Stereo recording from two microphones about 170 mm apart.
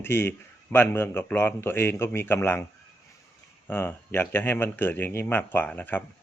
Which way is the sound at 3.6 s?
10° left (ahead or behind).